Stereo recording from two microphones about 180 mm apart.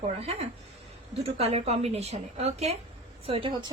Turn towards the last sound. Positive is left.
turn(degrees=-30)  # may be behind; listen again after turning